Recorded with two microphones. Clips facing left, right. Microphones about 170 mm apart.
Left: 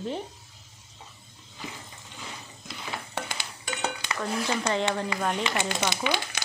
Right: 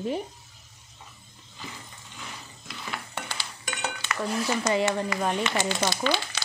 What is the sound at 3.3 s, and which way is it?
Dishes, 25° left (ahead or behind).